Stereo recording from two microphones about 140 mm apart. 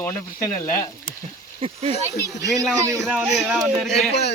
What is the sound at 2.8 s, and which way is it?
Speech, 20° right (ahead or behind).